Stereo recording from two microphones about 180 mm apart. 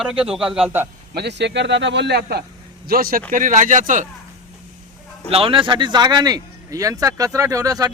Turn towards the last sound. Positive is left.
turn(degrees=-20)  # may be behind; listen again after turning